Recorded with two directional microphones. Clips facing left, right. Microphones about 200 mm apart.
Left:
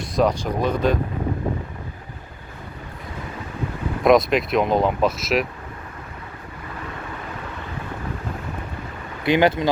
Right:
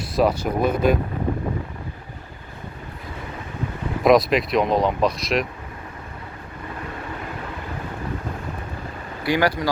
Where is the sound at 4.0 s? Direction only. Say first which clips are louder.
Even; centre (ahead or behind).